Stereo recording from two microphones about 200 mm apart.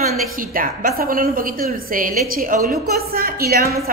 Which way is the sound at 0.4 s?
45° right (ahead or behind).